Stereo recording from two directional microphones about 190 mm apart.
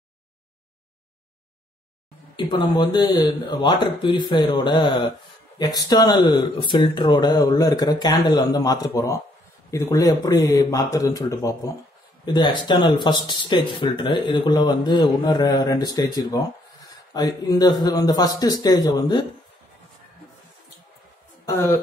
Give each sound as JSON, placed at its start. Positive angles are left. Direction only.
{"t": 2.3, "sound": "speech", "side_deg": 25}
{"t": 21.5, "sound": "speech", "side_deg": 15}